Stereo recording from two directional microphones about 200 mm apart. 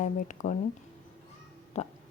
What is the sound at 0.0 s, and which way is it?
Speech, 40° left (ahead or behind).